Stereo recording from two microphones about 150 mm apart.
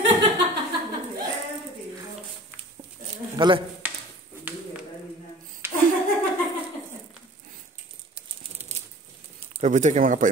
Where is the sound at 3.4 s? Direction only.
35° right (ahead or behind).